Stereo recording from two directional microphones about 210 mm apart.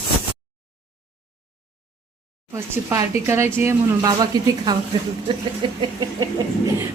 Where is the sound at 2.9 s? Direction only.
10° right (ahead or behind).